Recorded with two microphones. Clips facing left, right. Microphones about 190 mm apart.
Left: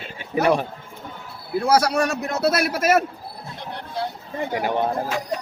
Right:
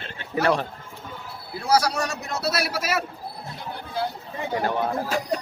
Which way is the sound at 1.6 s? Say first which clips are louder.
Left 3 dB; 55° left (ahead or behind).